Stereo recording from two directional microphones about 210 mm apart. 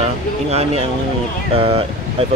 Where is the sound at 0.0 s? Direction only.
30° right (ahead or behind).